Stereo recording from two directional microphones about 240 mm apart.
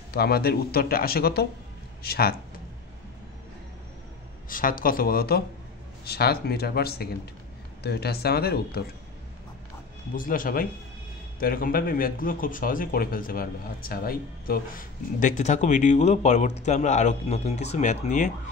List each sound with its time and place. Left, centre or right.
0.1 s speech: left
4.5 s speech: left
10.1 s speech: left